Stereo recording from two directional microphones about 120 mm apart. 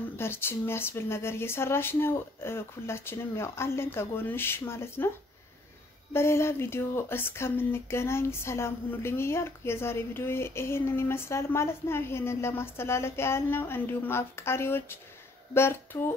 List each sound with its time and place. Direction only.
0.2 s speech: 20° left (ahead or behind)
6.1 s speech: 20° left (ahead or behind)